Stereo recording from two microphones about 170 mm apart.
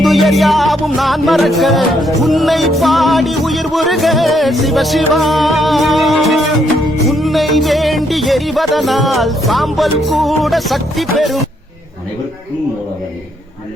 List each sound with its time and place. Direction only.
0.0 s music: centre (ahead or behind)